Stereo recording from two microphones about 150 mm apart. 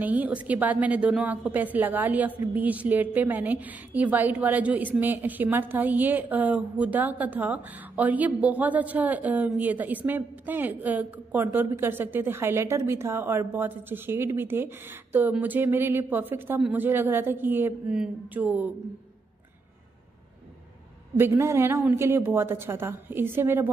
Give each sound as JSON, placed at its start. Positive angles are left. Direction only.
{"t": 0.0, "sound": "a woman's voice", "side_deg": -10}
{"t": 21.2, "sound": "a woman's voice", "side_deg": -15}